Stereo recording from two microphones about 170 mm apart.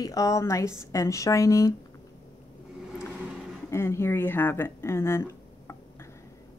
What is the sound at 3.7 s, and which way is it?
Speech, 15° left (ahead or behind).